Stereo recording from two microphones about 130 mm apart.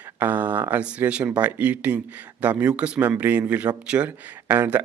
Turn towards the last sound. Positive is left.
turn(degrees=-20)  # may be behind; listen again after turning